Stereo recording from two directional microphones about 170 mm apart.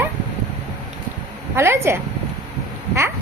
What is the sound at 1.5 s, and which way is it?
Speech, 15° right (ahead or behind).